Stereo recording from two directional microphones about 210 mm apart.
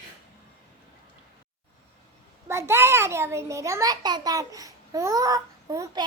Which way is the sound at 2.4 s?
10° right (ahead or behind).